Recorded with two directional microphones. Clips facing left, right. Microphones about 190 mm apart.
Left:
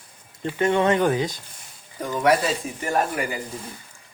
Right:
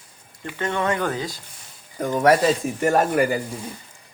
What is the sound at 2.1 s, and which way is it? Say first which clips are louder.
Speech: right 3 dB; 45° right (ahead or behind).